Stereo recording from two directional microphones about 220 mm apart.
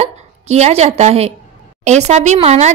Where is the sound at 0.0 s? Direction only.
30° right (ahead or behind).